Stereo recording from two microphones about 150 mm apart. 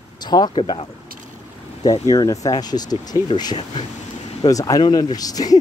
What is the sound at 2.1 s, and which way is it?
Speech, 25° left (ahead or behind).